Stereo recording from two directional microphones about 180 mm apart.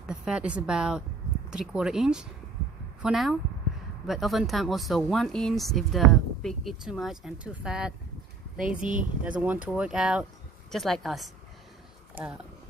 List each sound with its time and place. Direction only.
0.1 s a woman's voice: 5° right (ahead or behind)
8.5 s speech: 50° right (ahead or behind)
9.2 s speech: 10° right (ahead or behind)
12.2 s speech: 10° right (ahead or behind)